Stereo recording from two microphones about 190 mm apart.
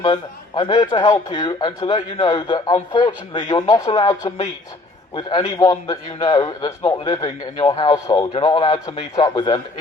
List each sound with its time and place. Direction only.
0.0 s a man's voice: 25° left (ahead or behind)